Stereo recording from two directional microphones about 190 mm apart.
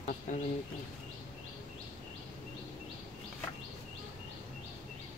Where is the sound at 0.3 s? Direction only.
40° left (ahead or behind).